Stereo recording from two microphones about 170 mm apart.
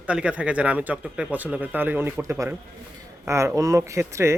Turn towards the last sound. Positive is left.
turn(degrees=-15)  # may be behind; listen again after turning